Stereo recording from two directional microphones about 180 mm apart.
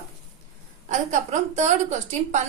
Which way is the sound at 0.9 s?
40° right (ahead or behind).